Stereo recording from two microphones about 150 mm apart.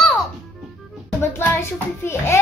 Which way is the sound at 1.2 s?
15° left (ahead or behind).